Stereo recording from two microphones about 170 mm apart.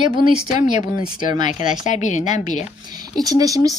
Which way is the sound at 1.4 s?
45° left (ahead or behind).